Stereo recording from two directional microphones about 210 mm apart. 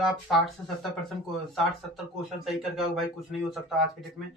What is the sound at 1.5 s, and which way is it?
Speech, centre (ahead or behind).